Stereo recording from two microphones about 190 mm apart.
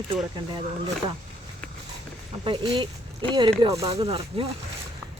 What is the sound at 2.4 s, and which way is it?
Speech, 25° right (ahead or behind).